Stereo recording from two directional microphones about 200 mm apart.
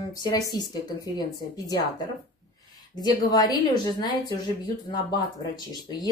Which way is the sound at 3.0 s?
20° left (ahead or behind).